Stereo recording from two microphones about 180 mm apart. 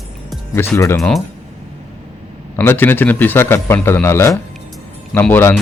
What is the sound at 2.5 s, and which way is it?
A man's voice, 10° left (ahead or behind).